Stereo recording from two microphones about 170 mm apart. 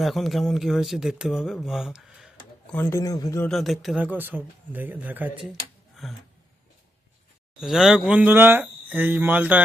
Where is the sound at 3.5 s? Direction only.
Centre (ahead or behind).